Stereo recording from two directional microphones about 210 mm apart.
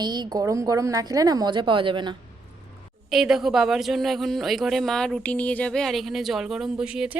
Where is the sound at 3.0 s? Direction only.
Centre (ahead or behind).